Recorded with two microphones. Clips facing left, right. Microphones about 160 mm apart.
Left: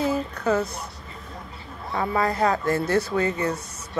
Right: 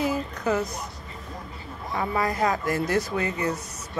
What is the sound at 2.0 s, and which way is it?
Speech, 30° left (ahead or behind).